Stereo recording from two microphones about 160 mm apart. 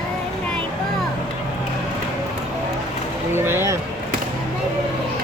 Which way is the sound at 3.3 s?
15° right (ahead or behind).